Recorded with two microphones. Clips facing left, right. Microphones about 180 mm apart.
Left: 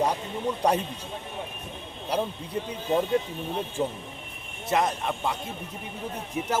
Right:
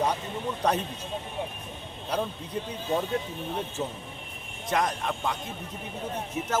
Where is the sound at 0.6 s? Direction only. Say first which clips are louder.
Left 2 dB; 10° left (ahead or behind).